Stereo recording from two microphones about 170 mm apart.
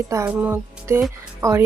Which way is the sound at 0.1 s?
15° right (ahead or behind).